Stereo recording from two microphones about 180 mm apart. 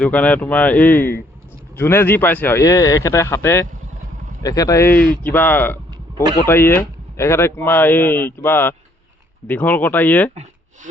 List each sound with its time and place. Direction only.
0.0 s speech: 10° left (ahead or behind)